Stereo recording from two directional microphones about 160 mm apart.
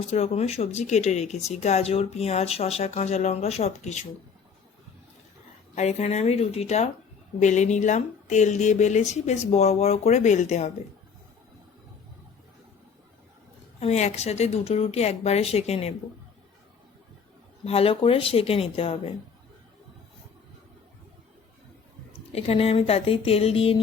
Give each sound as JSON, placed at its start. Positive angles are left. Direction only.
{"t": 0.1, "sound": "speech", "side_deg": 40}
{"t": 5.7, "sound": "speech", "side_deg": 40}
{"t": 13.7, "sound": "speech", "side_deg": 45}
{"t": 17.7, "sound": "speech", "side_deg": 35}
{"t": 22.3, "sound": "speech", "side_deg": 40}